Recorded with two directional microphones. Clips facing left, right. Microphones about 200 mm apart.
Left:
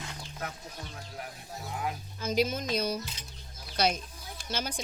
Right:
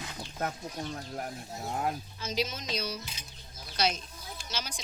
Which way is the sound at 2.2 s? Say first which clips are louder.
Left 5 dB; 55° left (ahead or behind).